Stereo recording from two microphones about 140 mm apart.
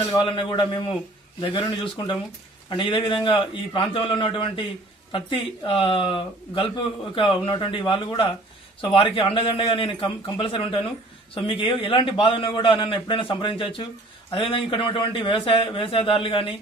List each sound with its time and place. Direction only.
0.2 s speech: 35° left (ahead or behind)